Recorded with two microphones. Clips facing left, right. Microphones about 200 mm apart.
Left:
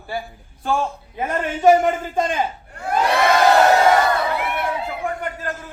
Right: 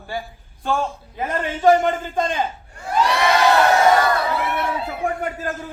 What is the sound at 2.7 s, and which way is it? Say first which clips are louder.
Crowd: left 1 dB; 55° left (ahead or behind).